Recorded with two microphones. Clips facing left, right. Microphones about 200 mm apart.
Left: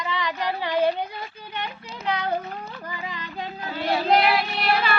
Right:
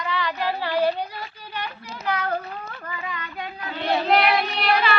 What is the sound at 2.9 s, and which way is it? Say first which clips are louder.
Music: right 3 dB; 25° left (ahead or behind).